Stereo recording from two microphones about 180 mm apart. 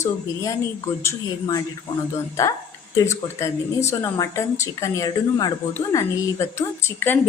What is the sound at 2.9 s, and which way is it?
A woman's voice, 15° left (ahead or behind).